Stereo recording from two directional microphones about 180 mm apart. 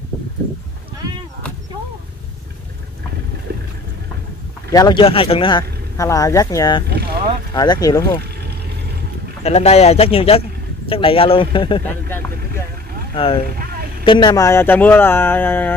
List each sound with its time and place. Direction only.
3.5 s vehicle: 65° right (ahead or behind)
4.6 s speech: 20° left (ahead or behind)
9.4 s speech: 35° left (ahead or behind)
11.8 s speech: 10° left (ahead or behind)
13.1 s speech: 30° left (ahead or behind); by 15.7 s 10° left (ahead or behind)